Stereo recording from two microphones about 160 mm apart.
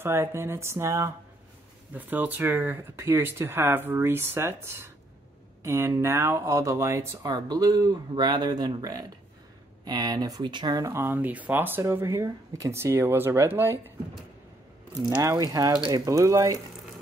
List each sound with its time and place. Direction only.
0.0 s speech: 15° right (ahead or behind)
15.2 s speech: 20° right (ahead or behind)